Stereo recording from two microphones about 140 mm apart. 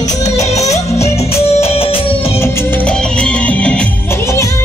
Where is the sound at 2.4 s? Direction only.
10° left (ahead or behind).